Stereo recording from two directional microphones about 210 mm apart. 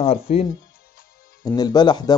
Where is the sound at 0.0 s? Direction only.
30° left (ahead or behind).